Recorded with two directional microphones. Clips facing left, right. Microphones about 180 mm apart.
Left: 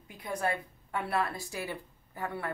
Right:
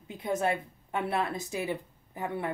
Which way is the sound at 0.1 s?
25° right (ahead or behind).